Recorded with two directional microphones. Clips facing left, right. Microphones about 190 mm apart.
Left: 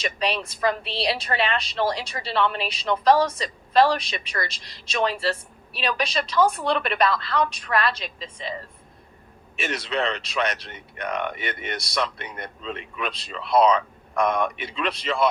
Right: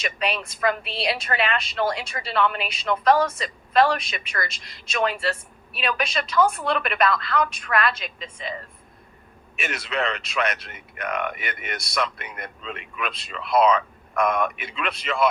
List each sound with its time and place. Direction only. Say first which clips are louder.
0.0 s a woman's voice: left 1 dB; 30° left (ahead or behind)
9.6 s a woman's voice: left 1 dB; 30° left (ahead or behind)